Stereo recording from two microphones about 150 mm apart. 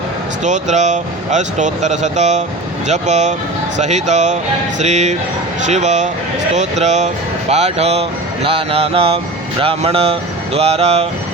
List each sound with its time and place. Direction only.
0.4 s speech: 50° right (ahead or behind)